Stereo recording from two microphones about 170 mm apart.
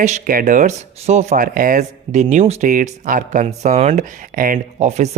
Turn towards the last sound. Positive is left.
turn(degrees=-45)  # may be behind; listen again after turning